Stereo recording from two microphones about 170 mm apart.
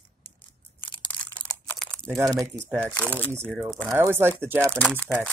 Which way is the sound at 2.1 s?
20° right (ahead or behind).